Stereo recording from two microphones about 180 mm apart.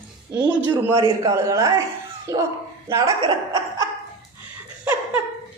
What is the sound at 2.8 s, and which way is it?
Speech, 15° right (ahead or behind).